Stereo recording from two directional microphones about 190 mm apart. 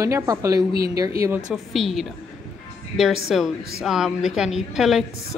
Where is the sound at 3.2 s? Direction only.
Centre (ahead or behind).